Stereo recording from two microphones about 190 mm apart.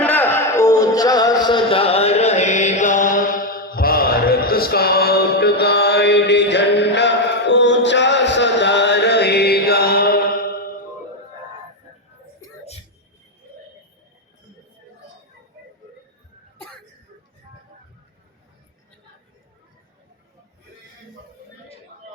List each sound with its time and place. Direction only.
0.0 s music: 10° left (ahead or behind); by 10.8 s 50° left (ahead or behind)